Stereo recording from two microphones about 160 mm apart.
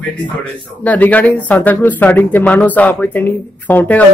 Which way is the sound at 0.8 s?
10° left (ahead or behind).